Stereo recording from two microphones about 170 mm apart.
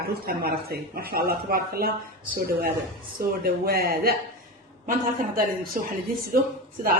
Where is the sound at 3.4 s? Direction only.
60° right (ahead or behind).